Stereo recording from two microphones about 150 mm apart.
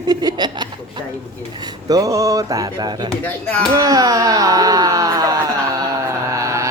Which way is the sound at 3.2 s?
10° left (ahead or behind).